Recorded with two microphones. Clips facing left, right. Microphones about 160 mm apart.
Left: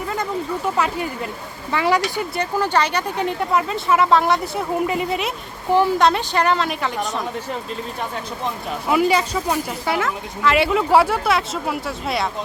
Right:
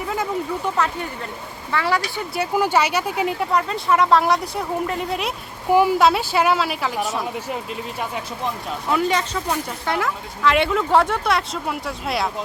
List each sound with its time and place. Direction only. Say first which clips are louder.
0.1 s a sound: right 1 dB; centre (ahead or behind)
1.7 s speech: left 3 dB; 15° left (ahead or behind)
2.3 s speech: right 2 dB; 10° right (ahead or behind)
8.9 s speech: left 3 dB; 10° left (ahead or behind)